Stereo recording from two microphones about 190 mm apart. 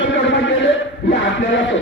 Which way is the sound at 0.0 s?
70° left (ahead or behind).